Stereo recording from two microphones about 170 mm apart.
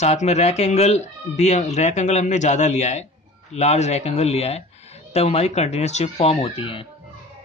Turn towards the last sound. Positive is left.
turn(degrees=30)  # may be behind; listen again after turning